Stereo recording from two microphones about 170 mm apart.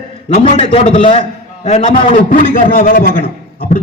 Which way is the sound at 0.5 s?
35° left (ahead or behind).